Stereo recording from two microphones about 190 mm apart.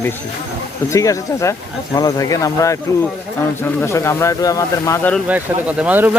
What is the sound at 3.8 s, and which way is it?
Speech, 15° left (ahead or behind).